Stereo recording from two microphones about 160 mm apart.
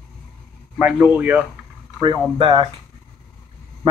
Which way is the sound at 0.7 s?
10° right (ahead or behind).